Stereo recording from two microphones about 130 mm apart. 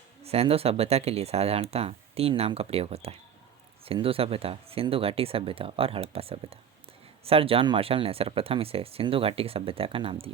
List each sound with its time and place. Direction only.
0.2 s speech: 50° right (ahead or behind)